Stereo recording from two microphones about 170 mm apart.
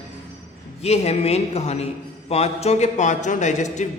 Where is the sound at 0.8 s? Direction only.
40° left (ahead or behind).